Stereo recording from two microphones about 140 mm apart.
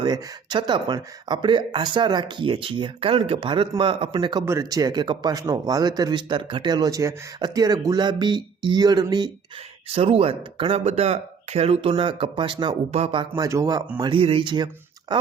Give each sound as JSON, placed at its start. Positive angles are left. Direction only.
{"t": 0.0, "sound": "speech", "side_deg": -30}
{"t": 9.9, "sound": "speech", "side_deg": -45}
{"t": 14.0, "sound": "speech", "side_deg": -40}